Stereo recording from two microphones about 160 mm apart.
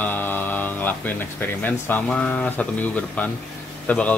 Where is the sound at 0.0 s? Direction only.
10° left (ahead or behind).